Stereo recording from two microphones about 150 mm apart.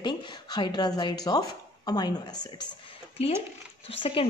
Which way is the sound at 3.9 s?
40° left (ahead or behind).